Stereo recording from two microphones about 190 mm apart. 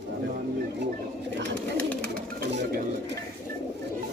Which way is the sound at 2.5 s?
65° right (ahead or behind).